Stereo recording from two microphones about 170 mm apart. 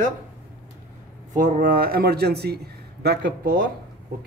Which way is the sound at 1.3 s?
55° right (ahead or behind).